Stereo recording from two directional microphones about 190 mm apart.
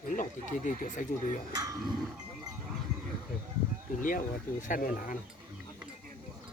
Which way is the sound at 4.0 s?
45° left (ahead or behind).